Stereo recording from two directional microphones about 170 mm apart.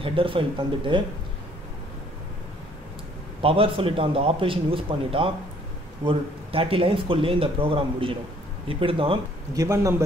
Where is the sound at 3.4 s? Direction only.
35° right (ahead or behind).